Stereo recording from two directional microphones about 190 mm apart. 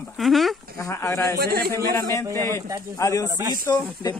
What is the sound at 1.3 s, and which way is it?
Speech, 55° right (ahead or behind).